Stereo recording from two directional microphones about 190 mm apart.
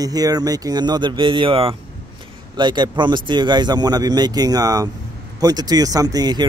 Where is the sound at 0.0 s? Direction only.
20° right (ahead or behind).